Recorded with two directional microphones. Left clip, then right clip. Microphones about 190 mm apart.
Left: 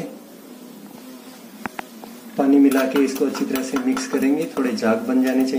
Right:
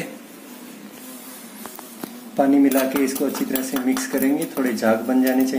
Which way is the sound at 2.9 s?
15° right (ahead or behind).